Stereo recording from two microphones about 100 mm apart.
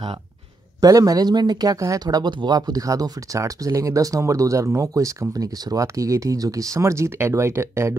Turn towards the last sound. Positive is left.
turn(degrees=-25)  # may be behind; listen again after turning